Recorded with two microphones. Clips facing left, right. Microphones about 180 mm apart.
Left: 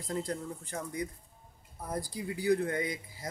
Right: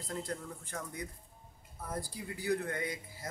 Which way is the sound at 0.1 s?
15° left (ahead or behind).